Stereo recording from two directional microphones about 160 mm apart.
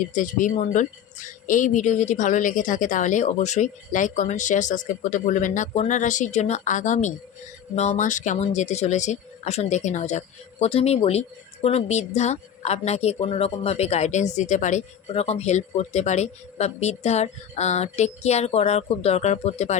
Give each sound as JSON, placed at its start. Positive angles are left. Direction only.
{"t": 0.1, "sound": "speech", "side_deg": 55}